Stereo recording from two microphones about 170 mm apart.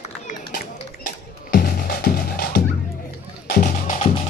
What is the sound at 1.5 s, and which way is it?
Music, 60° left (ahead or behind).